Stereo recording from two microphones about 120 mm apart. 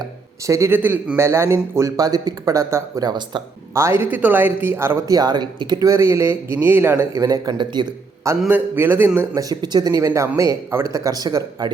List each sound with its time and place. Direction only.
0.0 s a man's voice: 25° right (ahead or behind)
3.0 s speech: 35° right (ahead or behind)
3.8 s speech: 20° right (ahead or behind)
5.1 s a man's voice: 35° right (ahead or behind)
8.4 s speech: 15° right (ahead or behind)
9.3 s a man's voice: 30° right (ahead or behind)